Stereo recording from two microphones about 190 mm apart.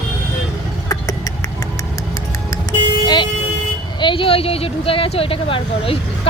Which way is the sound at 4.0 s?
25° left (ahead or behind).